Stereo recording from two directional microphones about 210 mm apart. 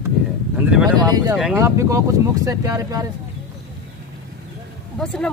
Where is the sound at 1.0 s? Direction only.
20° right (ahead or behind).